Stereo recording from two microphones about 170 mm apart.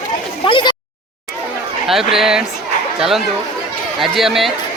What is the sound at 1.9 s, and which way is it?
Speech, centre (ahead or behind).